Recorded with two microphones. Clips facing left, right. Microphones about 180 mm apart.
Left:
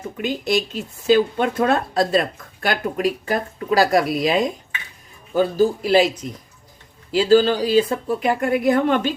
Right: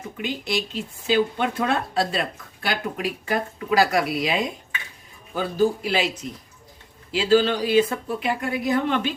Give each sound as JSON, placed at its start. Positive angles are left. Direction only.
{"t": 0.2, "sound": "speech", "side_deg": 45}
{"t": 7.1, "sound": "speech", "side_deg": 40}